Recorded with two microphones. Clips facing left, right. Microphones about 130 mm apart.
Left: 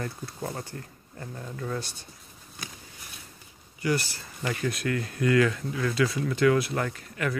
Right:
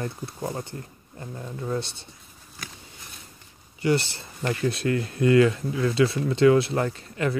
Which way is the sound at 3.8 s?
25° right (ahead or behind).